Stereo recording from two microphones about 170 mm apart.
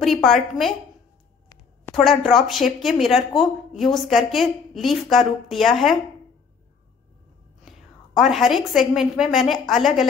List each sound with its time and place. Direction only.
0.0 s speech: centre (ahead or behind)
1.9 s speech: centre (ahead or behind)
8.2 s speech: centre (ahead or behind)